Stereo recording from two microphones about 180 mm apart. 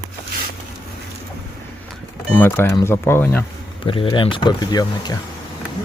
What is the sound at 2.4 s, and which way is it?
Speech, 10° left (ahead or behind).